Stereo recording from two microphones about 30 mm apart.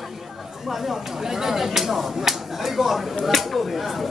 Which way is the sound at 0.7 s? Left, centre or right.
Centre.